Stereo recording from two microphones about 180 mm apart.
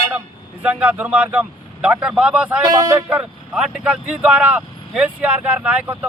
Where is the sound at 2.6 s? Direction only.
20° right (ahead or behind).